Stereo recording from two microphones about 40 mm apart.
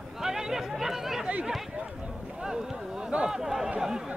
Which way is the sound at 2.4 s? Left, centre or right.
Centre.